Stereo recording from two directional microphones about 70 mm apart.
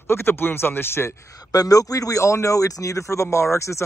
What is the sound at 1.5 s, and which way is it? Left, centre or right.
Speech, left.